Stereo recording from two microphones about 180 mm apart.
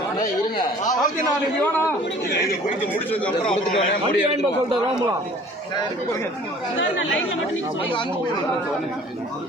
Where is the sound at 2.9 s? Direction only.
10° left (ahead or behind).